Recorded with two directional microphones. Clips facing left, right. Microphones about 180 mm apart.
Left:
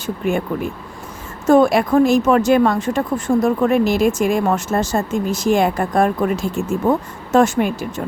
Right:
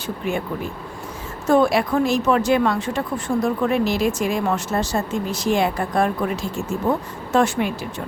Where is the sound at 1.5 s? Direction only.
45° left (ahead or behind).